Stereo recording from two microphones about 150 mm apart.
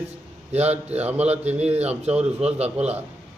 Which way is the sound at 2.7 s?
10° right (ahead or behind).